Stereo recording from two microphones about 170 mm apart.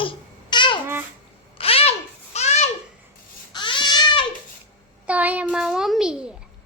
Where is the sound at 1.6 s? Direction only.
35° left (ahead or behind).